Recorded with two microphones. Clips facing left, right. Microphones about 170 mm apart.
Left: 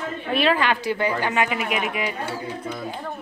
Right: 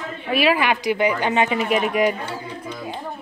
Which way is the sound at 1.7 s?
40° right (ahead or behind).